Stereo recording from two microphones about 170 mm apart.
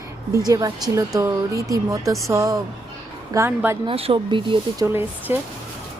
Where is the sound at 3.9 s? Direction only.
35° right (ahead or behind).